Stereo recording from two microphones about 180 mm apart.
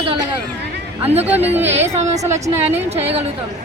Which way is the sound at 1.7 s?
40° right (ahead or behind).